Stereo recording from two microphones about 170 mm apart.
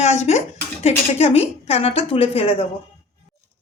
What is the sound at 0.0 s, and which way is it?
Speech, 40° left (ahead or behind).